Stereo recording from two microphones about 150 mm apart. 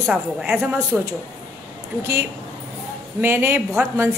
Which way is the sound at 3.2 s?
15° right (ahead or behind).